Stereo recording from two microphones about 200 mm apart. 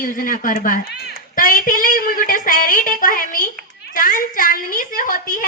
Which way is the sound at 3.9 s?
45° left (ahead or behind).